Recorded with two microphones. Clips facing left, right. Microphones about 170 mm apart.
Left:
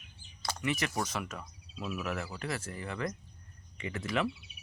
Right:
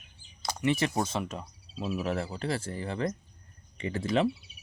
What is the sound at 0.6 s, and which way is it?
Speech, 30° right (ahead or behind).